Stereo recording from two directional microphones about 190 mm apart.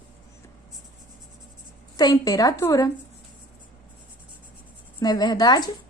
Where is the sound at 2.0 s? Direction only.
20° left (ahead or behind).